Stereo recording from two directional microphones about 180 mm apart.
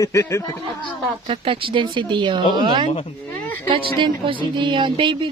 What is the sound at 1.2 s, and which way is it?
Speech, 30° right (ahead or behind).